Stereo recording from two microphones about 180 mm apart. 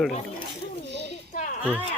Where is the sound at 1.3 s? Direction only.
45° left (ahead or behind).